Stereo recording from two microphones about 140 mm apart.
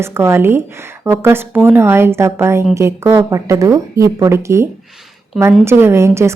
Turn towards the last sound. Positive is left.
turn(degrees=-20)  # may be behind; listen again after turning